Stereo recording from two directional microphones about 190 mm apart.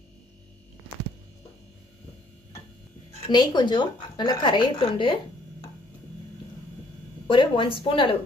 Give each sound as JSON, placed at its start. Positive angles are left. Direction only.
{"t": 3.1, "sound": "speech", "side_deg": 25}
{"t": 7.2, "sound": "speech", "side_deg": 25}